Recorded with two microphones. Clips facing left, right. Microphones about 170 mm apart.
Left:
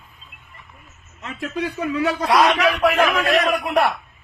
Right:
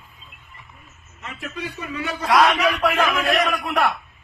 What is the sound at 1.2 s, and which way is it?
A man's voice, 90° left.